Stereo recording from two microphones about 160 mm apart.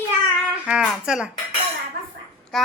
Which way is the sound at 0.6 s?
5° right (ahead or behind).